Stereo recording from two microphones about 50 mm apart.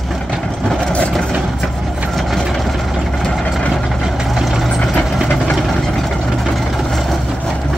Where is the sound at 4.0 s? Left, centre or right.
Centre.